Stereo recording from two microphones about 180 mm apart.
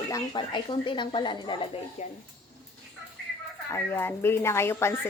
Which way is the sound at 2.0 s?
40° left (ahead or behind).